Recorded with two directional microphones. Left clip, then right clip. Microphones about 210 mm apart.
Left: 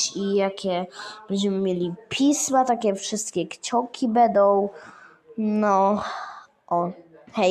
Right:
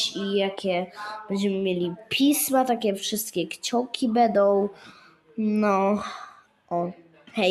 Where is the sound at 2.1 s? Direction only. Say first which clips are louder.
Left 1 dB; 10° left (ahead or behind).